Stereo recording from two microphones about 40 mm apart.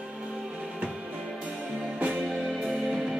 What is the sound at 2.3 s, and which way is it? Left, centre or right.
Music, centre.